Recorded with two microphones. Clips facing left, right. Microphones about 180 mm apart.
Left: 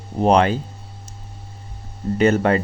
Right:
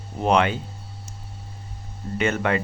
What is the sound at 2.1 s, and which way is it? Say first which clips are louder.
Speech: left 7 dB; 35° left (ahead or behind).